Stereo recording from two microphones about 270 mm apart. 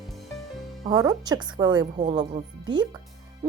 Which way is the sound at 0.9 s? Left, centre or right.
Centre.